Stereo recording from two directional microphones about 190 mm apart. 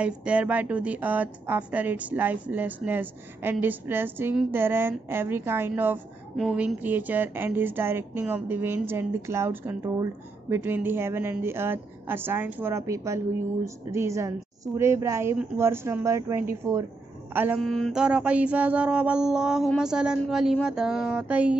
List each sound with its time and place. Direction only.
0.0 s a woman's voice: 5° right (ahead or behind)
17.6 s mantra: centre (ahead or behind)